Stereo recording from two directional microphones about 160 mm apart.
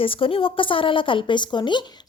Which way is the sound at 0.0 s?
35° left (ahead or behind).